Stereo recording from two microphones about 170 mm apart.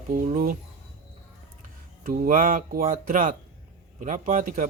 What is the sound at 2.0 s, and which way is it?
Speech, 55° right (ahead or behind).